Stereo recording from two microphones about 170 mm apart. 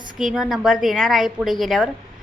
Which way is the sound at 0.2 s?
Centre (ahead or behind).